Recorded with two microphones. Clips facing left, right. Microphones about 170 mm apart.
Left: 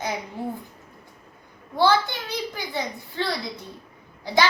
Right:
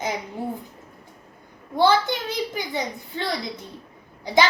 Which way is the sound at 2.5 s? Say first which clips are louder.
Right 2 dB; 20° right (ahead or behind).